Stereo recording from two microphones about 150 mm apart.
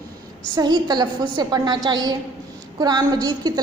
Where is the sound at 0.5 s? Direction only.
25° right (ahead or behind).